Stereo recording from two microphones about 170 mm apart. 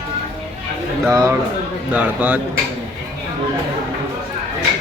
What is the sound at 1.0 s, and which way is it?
A man's voice, 15° right (ahead or behind).